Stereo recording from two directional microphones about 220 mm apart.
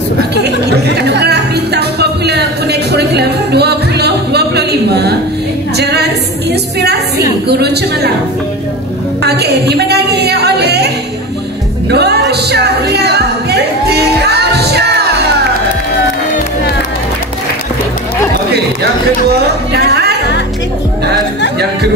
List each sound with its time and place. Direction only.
0.4 s music: 50° right (ahead or behind)
5.8 s a sound: 50° right (ahead or behind)
6.8 s music: 50° right (ahead or behind)
9.2 s music: 50° right (ahead or behind)
11.9 s music: 50° right (ahead or behind)
19.7 s music: 50° right (ahead or behind)